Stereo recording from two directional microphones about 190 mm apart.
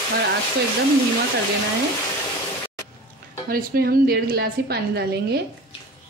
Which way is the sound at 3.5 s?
50° right (ahead or behind).